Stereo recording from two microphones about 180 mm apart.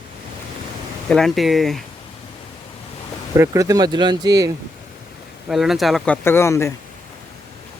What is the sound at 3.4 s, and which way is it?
Speech, 15° right (ahead or behind).